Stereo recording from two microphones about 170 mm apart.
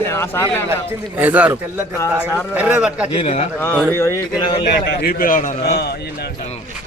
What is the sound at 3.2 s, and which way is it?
Speech, 40° left (ahead or behind).